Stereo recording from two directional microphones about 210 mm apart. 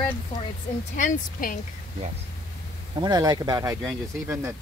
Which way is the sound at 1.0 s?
40° left (ahead or behind).